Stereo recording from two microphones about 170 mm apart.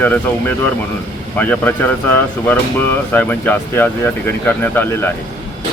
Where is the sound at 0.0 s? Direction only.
10° left (ahead or behind).